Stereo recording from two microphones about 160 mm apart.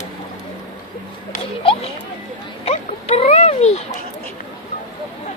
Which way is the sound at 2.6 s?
40° left (ahead or behind).